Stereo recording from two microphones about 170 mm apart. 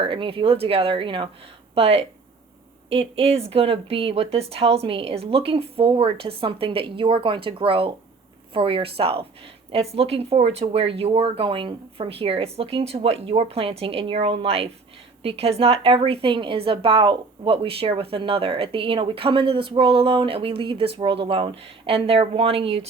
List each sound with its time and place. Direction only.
0.0 s a woman's voice: 30° right (ahead or behind)